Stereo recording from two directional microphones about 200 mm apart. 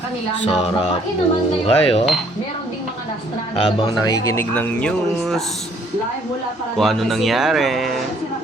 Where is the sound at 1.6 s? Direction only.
30° left (ahead or behind).